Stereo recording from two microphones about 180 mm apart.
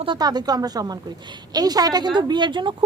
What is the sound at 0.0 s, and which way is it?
A woman's voice, 25° right (ahead or behind).